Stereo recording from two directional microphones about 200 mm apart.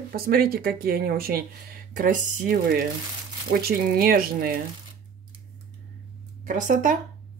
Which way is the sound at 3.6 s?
45° right (ahead or behind).